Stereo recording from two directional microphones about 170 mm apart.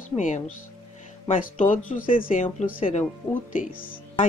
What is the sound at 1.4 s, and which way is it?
A woman's voice, 50° left (ahead or behind).